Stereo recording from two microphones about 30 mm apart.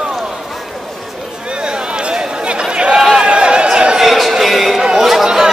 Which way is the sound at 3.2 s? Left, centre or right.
Right.